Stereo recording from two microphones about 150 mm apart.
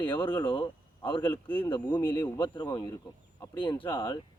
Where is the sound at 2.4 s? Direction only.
30° left (ahead or behind).